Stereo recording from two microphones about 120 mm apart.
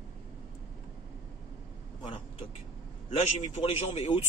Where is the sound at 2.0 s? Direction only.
55° left (ahead or behind).